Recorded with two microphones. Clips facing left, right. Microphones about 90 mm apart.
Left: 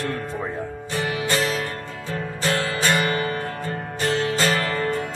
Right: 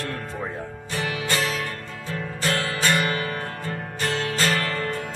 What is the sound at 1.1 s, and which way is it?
Music, 25° left (ahead or behind).